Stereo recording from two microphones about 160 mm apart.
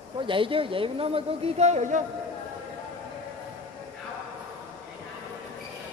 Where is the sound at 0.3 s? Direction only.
35° right (ahead or behind); by 2.0 s 50° right (ahead or behind).